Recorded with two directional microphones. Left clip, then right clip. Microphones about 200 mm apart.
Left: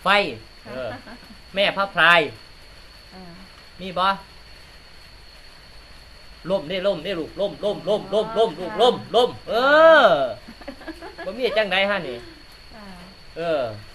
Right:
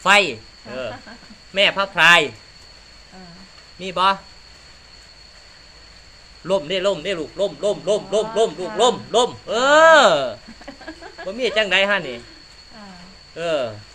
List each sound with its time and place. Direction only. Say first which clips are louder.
0.0 s a man's voice: right 4 dB; 30° right (ahead or behind)
3.8 s a man's voice: right 3 dB; 30° right (ahead or behind)
6.4 s a man's voice: right 3 dB; 30° right (ahead or behind)
10.7 s a sound: even; centre (ahead or behind)
11.3 s a man's voice: right 2 dB; 25° right (ahead or behind)
13.3 s a man's voice: right 1 dB; 30° right (ahead or behind)